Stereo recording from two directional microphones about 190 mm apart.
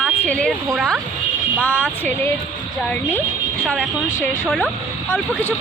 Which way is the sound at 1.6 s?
10° left (ahead or behind).